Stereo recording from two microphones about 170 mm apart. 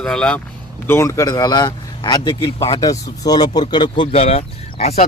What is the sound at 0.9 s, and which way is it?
A man's voice, 15° left (ahead or behind).